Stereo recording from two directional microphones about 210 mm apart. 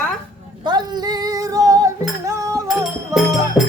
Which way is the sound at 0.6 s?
20° right (ahead or behind).